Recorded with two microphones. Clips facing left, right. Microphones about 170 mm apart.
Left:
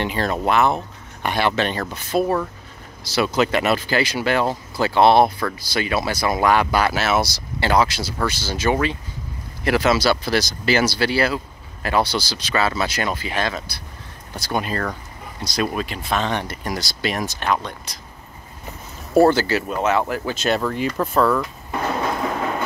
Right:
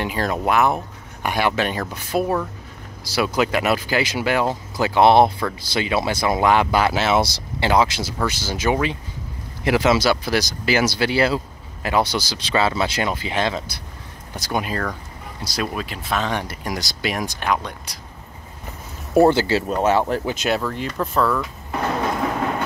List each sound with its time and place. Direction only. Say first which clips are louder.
0.0 s speech: left 1 dB; 5° right (ahead or behind)
14.3 s speech: even; 10° right (ahead or behind)
19.2 s speech: right 1 dB; 25° right (ahead or behind)
20.2 s speech: left 1 dB; 10° right (ahead or behind)